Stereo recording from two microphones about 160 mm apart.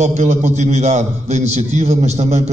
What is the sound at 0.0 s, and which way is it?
A man's voice, 45° right (ahead or behind).